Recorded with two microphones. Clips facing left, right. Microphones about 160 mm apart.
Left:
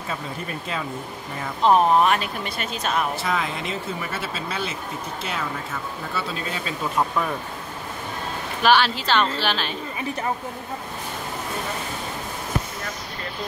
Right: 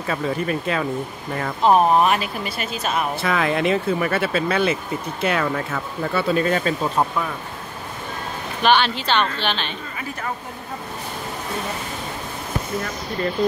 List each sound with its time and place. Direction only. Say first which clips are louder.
0.1 s speech: right 9 dB; 70° right (ahead or behind)
1.6 s speech: right 1 dB; 5° right (ahead or behind)
3.2 s speech: right 5 dB; 65° right (ahead or behind)
8.6 s speech: right 1 dB; 5° left (ahead or behind)